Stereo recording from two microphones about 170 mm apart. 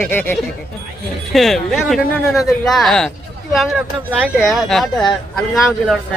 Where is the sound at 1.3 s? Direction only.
Centre (ahead or behind).